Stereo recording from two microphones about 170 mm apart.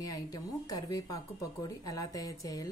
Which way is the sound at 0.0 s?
20° left (ahead or behind).